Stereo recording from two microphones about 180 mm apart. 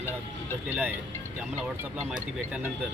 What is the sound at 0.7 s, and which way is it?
Speech, 10° right (ahead or behind).